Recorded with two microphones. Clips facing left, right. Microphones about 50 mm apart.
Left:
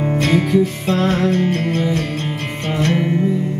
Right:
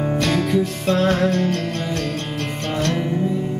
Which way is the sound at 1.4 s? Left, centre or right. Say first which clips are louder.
Left 4 dB; left.